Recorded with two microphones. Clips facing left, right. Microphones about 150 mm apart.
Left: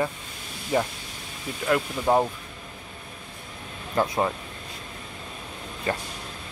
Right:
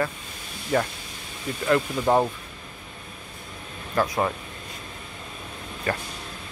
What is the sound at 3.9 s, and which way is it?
Speech, 20° left (ahead or behind).